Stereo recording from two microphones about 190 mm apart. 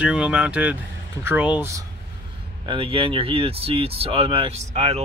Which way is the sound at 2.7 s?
30° right (ahead or behind).